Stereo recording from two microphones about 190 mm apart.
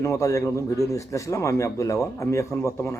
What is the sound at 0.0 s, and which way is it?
Speech, 15° left (ahead or behind).